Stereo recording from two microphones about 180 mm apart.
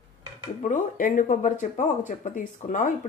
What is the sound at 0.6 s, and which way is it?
Speech, 45° left (ahead or behind).